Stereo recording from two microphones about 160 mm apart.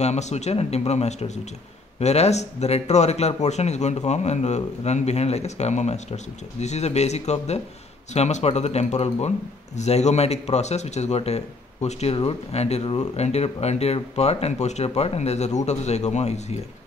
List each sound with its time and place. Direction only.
0.0 s speech: 45° left (ahead or behind)